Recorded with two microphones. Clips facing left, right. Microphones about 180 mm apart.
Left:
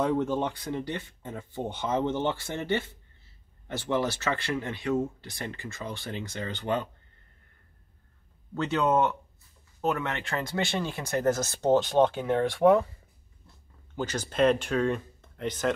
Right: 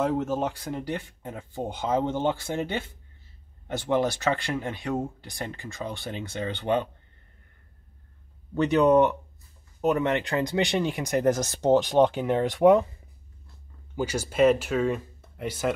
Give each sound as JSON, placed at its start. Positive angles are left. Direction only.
{"t": 0.0, "sound": "speech", "side_deg": -10}
{"t": 6.1, "sound": "speech", "side_deg": -20}
{"t": 8.5, "sound": "speech", "side_deg": -15}
{"t": 13.9, "sound": "speech", "side_deg": -10}